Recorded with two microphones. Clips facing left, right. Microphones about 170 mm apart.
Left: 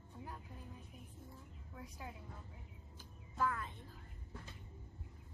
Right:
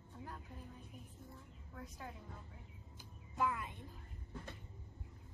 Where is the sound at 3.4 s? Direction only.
15° right (ahead or behind).